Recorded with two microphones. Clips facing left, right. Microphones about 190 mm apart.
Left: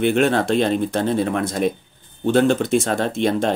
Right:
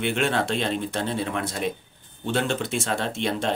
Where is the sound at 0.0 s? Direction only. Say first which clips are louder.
Left 7 dB; 45° left (ahead or behind).